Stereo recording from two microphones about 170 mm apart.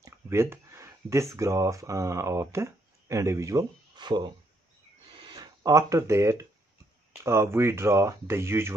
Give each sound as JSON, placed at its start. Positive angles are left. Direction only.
{"t": 0.0, "sound": "speech", "side_deg": -15}
{"t": 5.3, "sound": "speech", "side_deg": -25}